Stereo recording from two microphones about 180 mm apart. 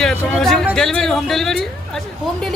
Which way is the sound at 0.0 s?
Centre (ahead or behind).